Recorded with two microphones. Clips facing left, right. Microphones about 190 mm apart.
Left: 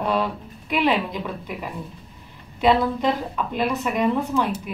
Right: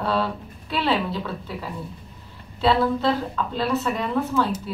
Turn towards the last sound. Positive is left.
turn(degrees=15)  # may be behind; listen again after turning